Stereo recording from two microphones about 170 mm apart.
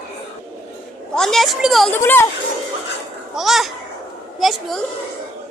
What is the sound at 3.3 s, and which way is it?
A woman's voice, centre (ahead or behind).